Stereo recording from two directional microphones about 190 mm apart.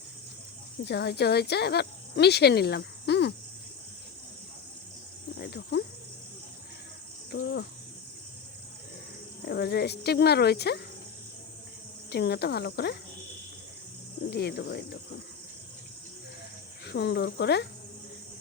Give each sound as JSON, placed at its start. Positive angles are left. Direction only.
{"t": 0.9, "sound": "speech", "side_deg": 60}
{"t": 5.4, "sound": "cricket", "side_deg": 60}
{"t": 7.3, "sound": "cricket", "side_deg": 65}
{"t": 9.5, "sound": "speech", "side_deg": 60}
{"t": 12.1, "sound": "speech", "side_deg": 60}
{"t": 14.3, "sound": "speech", "side_deg": 60}
{"t": 16.8, "sound": "speech", "side_deg": 65}